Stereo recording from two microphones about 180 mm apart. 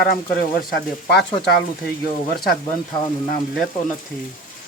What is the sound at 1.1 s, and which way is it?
Speech, 65° left (ahead or behind).